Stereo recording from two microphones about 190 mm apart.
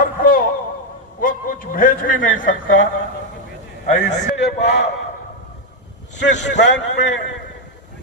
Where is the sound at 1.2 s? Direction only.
45° left (ahead or behind).